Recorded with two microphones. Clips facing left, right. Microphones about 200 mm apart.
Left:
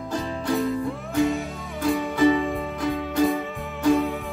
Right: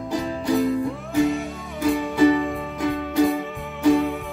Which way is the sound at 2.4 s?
Centre (ahead or behind).